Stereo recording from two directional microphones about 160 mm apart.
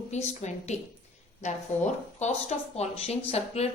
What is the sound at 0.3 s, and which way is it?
A woman's voice, 45° left (ahead or behind).